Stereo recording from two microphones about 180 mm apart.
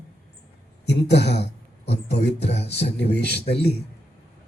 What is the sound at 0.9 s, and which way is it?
A man's voice, 70° left (ahead or behind).